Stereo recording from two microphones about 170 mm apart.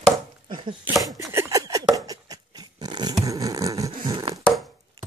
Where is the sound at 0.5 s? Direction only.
30° right (ahead or behind).